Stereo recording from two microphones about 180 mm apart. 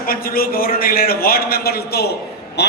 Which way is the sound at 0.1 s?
55° left (ahead or behind).